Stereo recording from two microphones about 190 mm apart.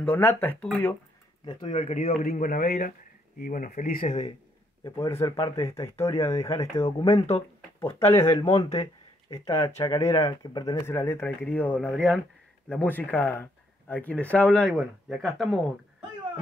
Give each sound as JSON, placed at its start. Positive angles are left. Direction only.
{"t": 0.0, "sound": "speech", "side_deg": 10}
{"t": 1.6, "sound": "speech", "side_deg": 35}
{"t": 2.2, "sound": "speech", "side_deg": 45}
{"t": 4.8, "sound": "speech", "side_deg": 20}
{"t": 6.5, "sound": "speech", "side_deg": 30}
{"t": 7.8, "sound": "speech", "side_deg": 15}
{"t": 8.5, "sound": "speech", "side_deg": 35}
{"t": 9.3, "sound": "speech", "side_deg": 15}